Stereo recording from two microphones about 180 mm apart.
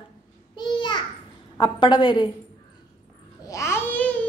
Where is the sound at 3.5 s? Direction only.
15° left (ahead or behind).